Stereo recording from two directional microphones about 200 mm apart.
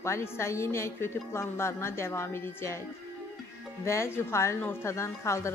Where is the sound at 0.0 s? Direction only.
15° left (ahead or behind).